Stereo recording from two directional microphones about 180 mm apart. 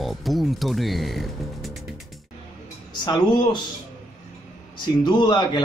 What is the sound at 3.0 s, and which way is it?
Speech, 25° left (ahead or behind).